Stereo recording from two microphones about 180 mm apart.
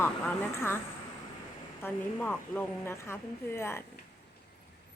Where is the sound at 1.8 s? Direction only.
5° left (ahead or behind).